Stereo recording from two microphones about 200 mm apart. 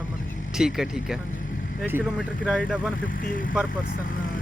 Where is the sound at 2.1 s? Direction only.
5° left (ahead or behind).